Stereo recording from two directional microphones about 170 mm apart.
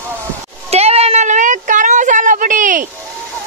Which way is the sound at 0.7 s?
40° right (ahead or behind).